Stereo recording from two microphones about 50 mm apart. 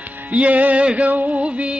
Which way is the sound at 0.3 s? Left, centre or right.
Right.